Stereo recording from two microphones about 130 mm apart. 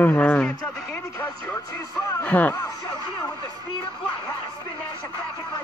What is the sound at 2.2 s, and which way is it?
Speech, 15° left (ahead or behind).